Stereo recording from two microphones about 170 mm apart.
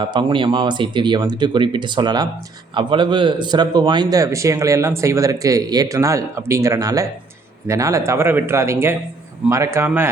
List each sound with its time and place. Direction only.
0.0 s a man's voice: 25° right (ahead or behind)